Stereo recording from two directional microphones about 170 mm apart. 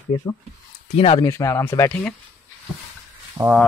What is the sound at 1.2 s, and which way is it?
Speech, 15° left (ahead or behind).